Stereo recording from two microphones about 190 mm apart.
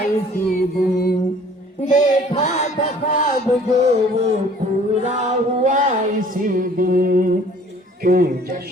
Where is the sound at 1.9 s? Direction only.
40° left (ahead or behind).